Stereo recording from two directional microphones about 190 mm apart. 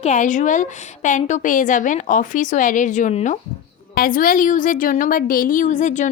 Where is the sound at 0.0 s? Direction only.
40° left (ahead or behind).